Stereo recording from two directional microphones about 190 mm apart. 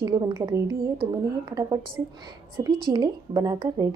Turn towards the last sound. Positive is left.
turn(degrees=-20)  # may be behind; listen again after turning